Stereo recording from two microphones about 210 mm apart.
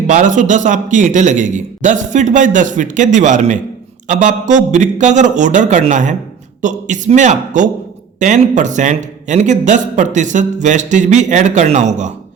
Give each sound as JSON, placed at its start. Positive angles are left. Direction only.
{"t": 0.1, "sound": "a man's voice", "side_deg": -35}